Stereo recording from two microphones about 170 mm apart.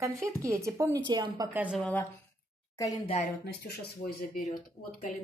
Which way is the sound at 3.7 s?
65° left (ahead or behind).